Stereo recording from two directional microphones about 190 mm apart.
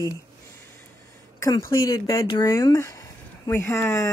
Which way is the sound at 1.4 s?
15° left (ahead or behind).